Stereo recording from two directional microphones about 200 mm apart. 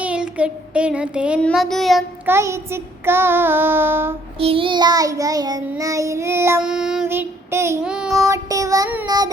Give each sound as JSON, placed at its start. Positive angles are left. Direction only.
{"t": 0.0, "sound": "child singing", "side_deg": -5}
{"t": 2.3, "sound": "child singing", "side_deg": -15}
{"t": 4.4, "sound": "child singing", "side_deg": -25}
{"t": 8.3, "sound": "child singing", "side_deg": -15}